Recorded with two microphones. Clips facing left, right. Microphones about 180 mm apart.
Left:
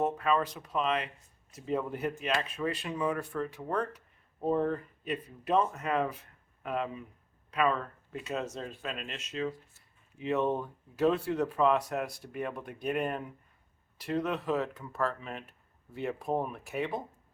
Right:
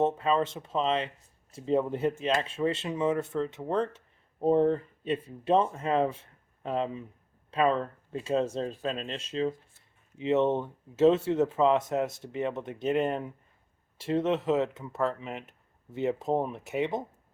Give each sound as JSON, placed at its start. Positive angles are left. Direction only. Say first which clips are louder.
{"t": 0.0, "sound": "speech", "louder": "right 3 dB", "side_deg": -25}